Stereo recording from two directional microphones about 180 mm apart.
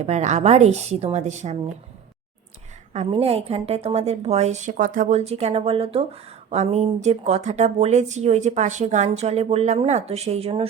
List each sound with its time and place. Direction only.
0.0 s speech: 40° right (ahead or behind)
2.9 s speech: 35° right (ahead or behind)